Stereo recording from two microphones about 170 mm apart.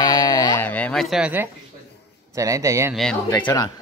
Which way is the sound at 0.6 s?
10° left (ahead or behind).